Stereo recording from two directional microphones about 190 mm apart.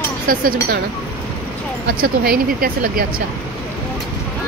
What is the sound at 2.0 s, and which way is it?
Speech, 50° right (ahead or behind).